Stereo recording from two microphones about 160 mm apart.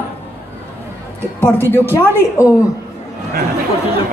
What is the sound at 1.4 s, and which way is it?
Speech, 15° left (ahead or behind).